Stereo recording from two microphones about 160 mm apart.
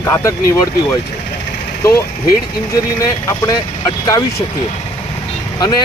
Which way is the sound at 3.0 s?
20° left (ahead or behind).